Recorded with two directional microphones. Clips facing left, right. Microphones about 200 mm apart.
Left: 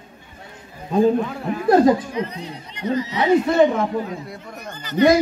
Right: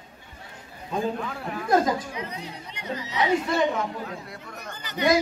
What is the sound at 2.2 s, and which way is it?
Speech, 10° right (ahead or behind).